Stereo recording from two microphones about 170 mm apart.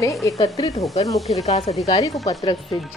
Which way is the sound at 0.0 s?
20° left (ahead or behind).